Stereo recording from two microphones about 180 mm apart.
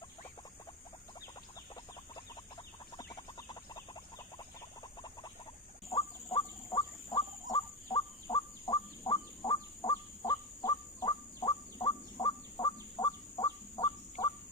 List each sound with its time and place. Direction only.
1.7 s fowl: 25° left (ahead or behind)
5.9 s bird: 20° left (ahead or behind)
6.2 s a sound: 25° left (ahead or behind)
7.5 s bird: 20° left (ahead or behind)